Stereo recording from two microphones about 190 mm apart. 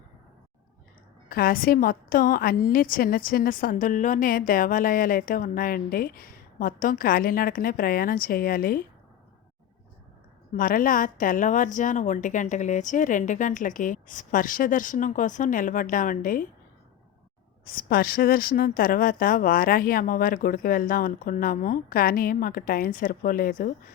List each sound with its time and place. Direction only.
1.3 s a woman's voice: 50° left (ahead or behind)
10.5 s a woman's voice: 45° left (ahead or behind)
17.7 s a woman's voice: 50° left (ahead or behind)